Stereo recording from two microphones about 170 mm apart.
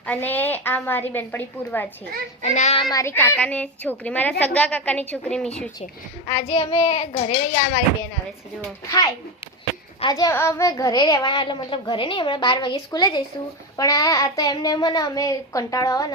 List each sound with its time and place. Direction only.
0.0 s a woman's voice: 10° left (ahead or behind)
2.4 s a child's voice: 40° left (ahead or behind)
2.9 s a woman's voice: 15° left (ahead or behind)
6.2 s a child's voice: 40° left (ahead or behind)
8.6 s a woman's voice: 15° left (ahead or behind)